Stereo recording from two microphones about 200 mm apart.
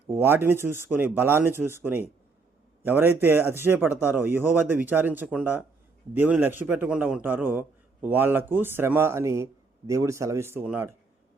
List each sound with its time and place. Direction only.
0.2 s speech: 10° right (ahead or behind)